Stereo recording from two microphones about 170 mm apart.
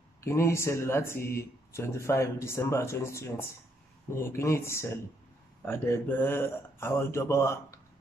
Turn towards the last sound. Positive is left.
turn(degrees=15)  # may be behind; listen again after turning